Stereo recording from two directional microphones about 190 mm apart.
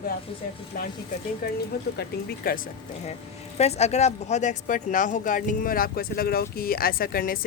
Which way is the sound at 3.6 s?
35° left (ahead or behind).